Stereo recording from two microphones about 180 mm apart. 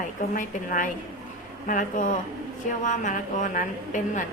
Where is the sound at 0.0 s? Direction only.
45° left (ahead or behind).